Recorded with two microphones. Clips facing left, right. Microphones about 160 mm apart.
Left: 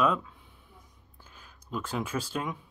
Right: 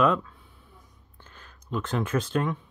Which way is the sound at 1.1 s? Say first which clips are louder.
Right 3 dB; 10° left (ahead or behind).